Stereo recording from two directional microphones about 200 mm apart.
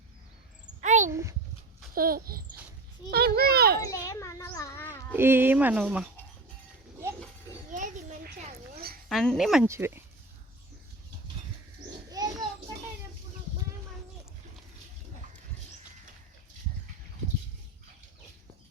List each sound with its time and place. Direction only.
0.8 s a sound: 40° right (ahead or behind)
1.1 s speech: 15° right (ahead or behind)
2.0 s a child's voice: 45° right (ahead or behind)
4.0 s a child's voice: 15° left (ahead or behind)
5.1 s speech: 10° right (ahead or behind)
7.7 s children playing: 45° right (ahead or behind)
8.7 s a sound: 50° right (ahead or behind)
9.0 s speech: centre (ahead or behind)
9.6 s speech: 15° right (ahead or behind)
12.2 s a sound: 20° right (ahead or behind)